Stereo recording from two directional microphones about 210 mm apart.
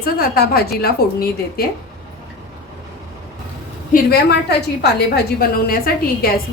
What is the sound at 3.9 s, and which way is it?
A woman's voice, 45° left (ahead or behind).